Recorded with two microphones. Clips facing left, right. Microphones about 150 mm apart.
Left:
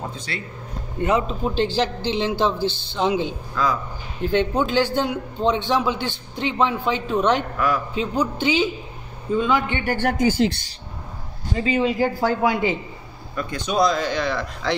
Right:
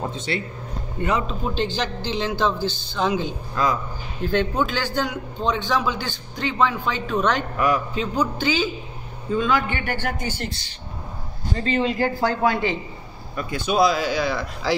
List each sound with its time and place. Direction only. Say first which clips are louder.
0.1 s speech: right 5 dB; 25° right (ahead or behind)
1.0 s a man's voice: left 3 dB; 25° left (ahead or behind)
7.5 s a man's voice: right 1 dB; 15° right (ahead or behind)
7.9 s a man's voice: left 1 dB; 25° left (ahead or behind)
9.9 s speech: left 8 dB; 75° left (ahead or behind)
11.5 s a man's voice: left 2 dB; 10° left (ahead or behind)
13.4 s speech: right 1 dB; 5° right (ahead or behind)